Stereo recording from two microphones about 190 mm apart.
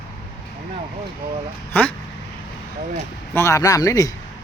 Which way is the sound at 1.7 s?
10° left (ahead or behind).